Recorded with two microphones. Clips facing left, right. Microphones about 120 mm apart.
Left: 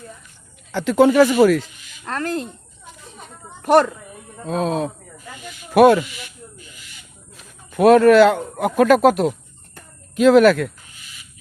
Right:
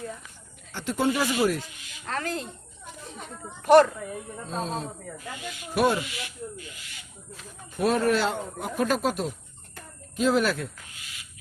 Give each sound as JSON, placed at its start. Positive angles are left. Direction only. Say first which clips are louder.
{"t": 0.7, "sound": "speech", "louder": "left 11 dB", "side_deg": 90}
{"t": 2.0, "sound": "speech", "louder": "left 6 dB", "side_deg": 55}
{"t": 2.8, "sound": "snake", "louder": "even", "side_deg": 0}
{"t": 3.6, "sound": "speech", "louder": "left 2 dB", "side_deg": 55}
{"t": 4.4, "sound": "speech", "louder": "left 11 dB", "side_deg": 75}
{"t": 7.7, "sound": "speech", "louder": "left 12 dB", "side_deg": 75}